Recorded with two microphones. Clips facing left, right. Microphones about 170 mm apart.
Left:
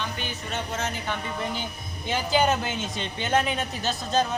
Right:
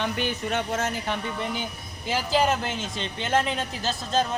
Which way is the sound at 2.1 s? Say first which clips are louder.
Even; 5° right (ahead or behind).